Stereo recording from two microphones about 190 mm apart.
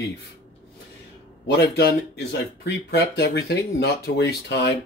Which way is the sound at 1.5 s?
60° left (ahead or behind).